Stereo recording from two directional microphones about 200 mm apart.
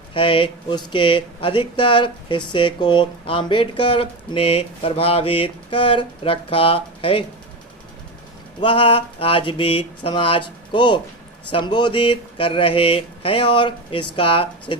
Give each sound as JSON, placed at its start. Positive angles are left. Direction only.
{"t": 0.1, "sound": "speech", "side_deg": 25}
{"t": 8.6, "sound": "speech", "side_deg": 25}